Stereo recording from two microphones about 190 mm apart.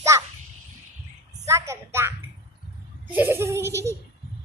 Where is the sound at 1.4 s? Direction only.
15° right (ahead or behind).